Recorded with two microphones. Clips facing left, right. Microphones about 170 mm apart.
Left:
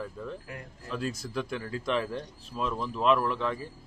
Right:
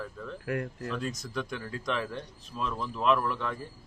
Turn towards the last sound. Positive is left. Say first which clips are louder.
# left 3 dB
turn(degrees=0)  # may be behind; listen again after turning